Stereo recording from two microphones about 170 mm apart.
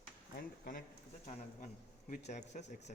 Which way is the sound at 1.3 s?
50° left (ahead or behind).